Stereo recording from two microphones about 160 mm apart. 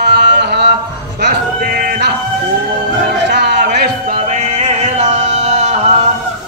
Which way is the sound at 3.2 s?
90° right.